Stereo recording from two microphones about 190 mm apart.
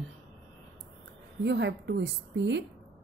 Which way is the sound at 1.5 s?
70° right (ahead or behind).